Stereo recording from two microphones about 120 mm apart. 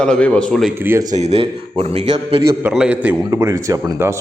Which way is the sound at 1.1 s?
70° right (ahead or behind).